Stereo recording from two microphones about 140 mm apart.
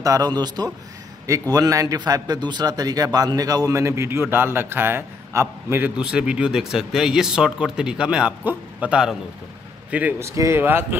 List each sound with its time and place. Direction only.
0.0 s a man's voice: 25° right (ahead or behind)